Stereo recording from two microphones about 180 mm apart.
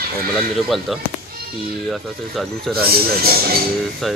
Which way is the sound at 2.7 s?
60° right (ahead or behind).